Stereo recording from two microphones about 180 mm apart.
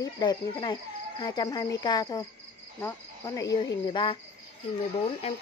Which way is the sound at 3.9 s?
30° left (ahead or behind).